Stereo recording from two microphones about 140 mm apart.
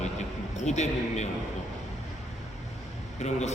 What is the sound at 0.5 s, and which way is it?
Speech, 55° left (ahead or behind).